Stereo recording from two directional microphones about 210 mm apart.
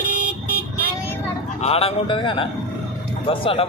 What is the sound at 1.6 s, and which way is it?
Speech, 30° left (ahead or behind).